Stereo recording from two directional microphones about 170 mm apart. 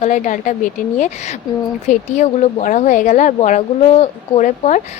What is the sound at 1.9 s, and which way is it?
A woman's voice, 45° left (ahead or behind).